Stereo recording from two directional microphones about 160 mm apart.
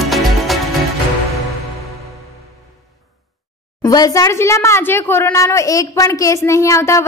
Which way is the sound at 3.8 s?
25° left (ahead or behind).